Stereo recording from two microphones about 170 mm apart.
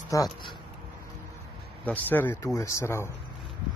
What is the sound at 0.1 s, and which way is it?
Speech, 20° left (ahead or behind).